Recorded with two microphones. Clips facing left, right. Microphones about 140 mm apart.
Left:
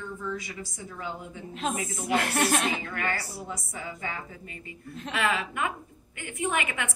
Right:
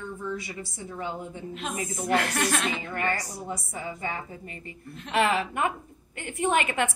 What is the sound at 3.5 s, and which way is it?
A woman's voice, 25° right (ahead or behind).